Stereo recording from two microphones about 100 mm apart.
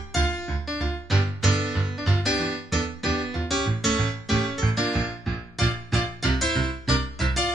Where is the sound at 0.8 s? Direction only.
Centre (ahead or behind).